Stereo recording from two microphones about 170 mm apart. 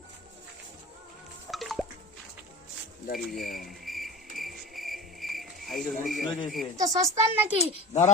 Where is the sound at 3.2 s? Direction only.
Centre (ahead or behind).